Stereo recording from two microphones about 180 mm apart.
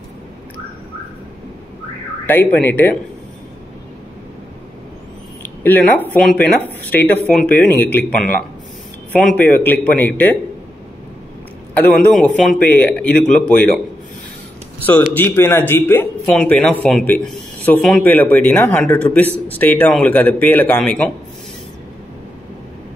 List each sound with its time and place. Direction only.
2.2 s speech: 10° left (ahead or behind)
5.4 s speech: 10° left (ahead or behind)
9.1 s speech: 5° left (ahead or behind)
12.0 s speech: centre (ahead or behind)
15.1 s speech: 15° left (ahead or behind)